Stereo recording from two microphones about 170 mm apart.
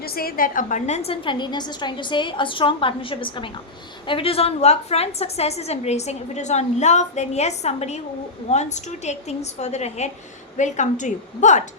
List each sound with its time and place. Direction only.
0.0 s a woman's voice: 60° left (ahead or behind); by 11.6 s 45° left (ahead or behind)